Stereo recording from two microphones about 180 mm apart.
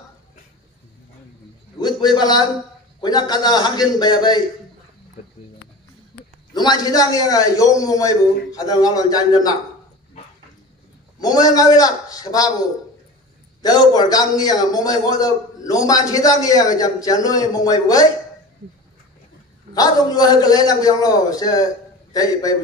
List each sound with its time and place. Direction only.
1.8 s a man's voice: 25° left (ahead or behind)
6.5 s a man's voice: 25° left (ahead or behind)
11.1 s a man's voice: 20° left (ahead or behind)
13.6 s a man's voice: 20° left (ahead or behind)
19.7 s a man's voice: 20° left (ahead or behind)